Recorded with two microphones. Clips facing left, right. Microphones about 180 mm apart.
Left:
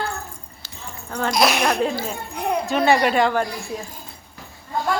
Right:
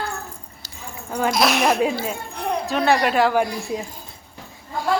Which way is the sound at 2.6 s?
Centre (ahead or behind).